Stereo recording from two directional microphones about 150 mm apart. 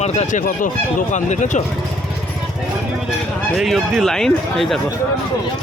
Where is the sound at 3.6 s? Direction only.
Centre (ahead or behind).